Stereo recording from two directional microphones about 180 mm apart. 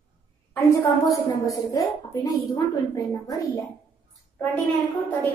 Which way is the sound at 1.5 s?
20° left (ahead or behind).